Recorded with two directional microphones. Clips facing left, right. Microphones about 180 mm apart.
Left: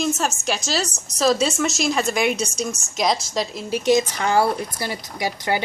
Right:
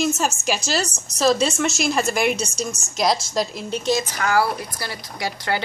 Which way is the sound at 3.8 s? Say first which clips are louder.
Left 5 dB; 15° left (ahead or behind).